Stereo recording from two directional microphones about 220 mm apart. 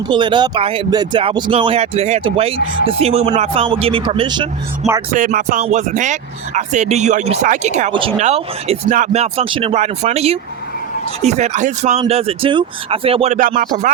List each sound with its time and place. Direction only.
0.1 s speech: 20° right (ahead or behind)
5.1 s speech: 35° right (ahead or behind)